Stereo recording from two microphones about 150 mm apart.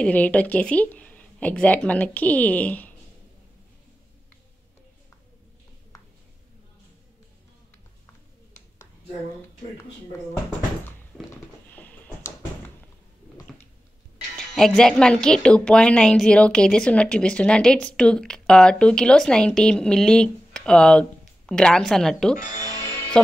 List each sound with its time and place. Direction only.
0.0 s speech: 10° left (ahead or behind)
11.7 s a sound: 10° left (ahead or behind)
14.3 s speech: 5° left (ahead or behind)
22.8 s music: 20° left (ahead or behind)